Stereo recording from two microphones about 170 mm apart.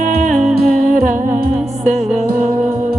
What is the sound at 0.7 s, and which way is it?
Humming, 50° right (ahead or behind).